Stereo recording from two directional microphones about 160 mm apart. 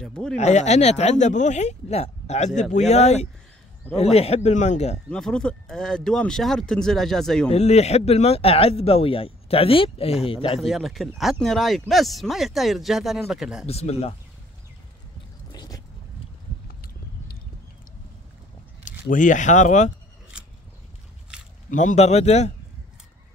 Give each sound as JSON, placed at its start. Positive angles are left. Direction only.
{"t": 0.0, "sound": "speech", "side_deg": 5}
{"t": 0.4, "sound": "speech", "side_deg": 45}
{"t": 5.1, "sound": "speech", "side_deg": 5}
{"t": 7.5, "sound": "speech", "side_deg": 45}
{"t": 10.6, "sound": "speech", "side_deg": 0}
{"t": 13.7, "sound": "speech", "side_deg": 40}
{"t": 15.5, "sound": "vehicle", "side_deg": 25}
{"t": 16.6, "sound": "a sound", "side_deg": 70}
{"t": 18.9, "sound": "speech", "side_deg": 50}
{"t": 21.3, "sound": "biting", "side_deg": -5}
{"t": 21.6, "sound": "speech", "side_deg": 50}